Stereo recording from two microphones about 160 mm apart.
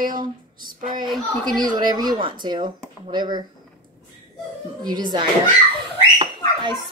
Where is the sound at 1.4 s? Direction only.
25° right (ahead or behind).